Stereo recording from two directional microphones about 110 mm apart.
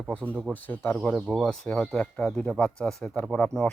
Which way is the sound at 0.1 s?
10° left (ahead or behind).